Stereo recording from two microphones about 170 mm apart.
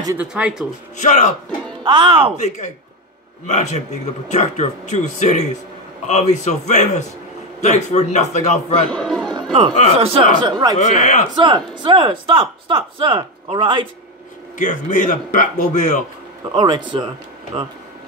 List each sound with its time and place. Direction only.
0.2 s speech: 5° right (ahead or behind)
0.9 s speech: 45° left (ahead or behind)
1.8 s speech: 30° right (ahead or behind)
3.4 s a man's voice: 40° left (ahead or behind)
8.9 s chatter: 5° left (ahead or behind)
9.4 s music: 30° right (ahead or behind)
9.9 s speech: 35° right (ahead or behind)
10.4 s speech: 25° right (ahead or behind)
10.8 s speech: 45° left (ahead or behind)
11.3 s speech: 25° right (ahead or behind)
14.6 s speech: 45° left (ahead or behind)
16.5 s speech: 25° right (ahead or behind)